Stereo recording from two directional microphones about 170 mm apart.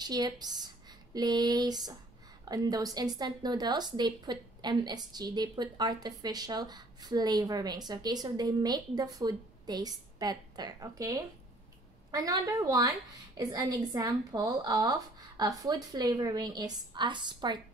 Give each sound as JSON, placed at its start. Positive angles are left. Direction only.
{"t": 0.0, "sound": "a woman's voice", "side_deg": -25}